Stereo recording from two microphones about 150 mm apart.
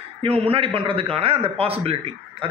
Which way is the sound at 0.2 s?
40° right (ahead or behind).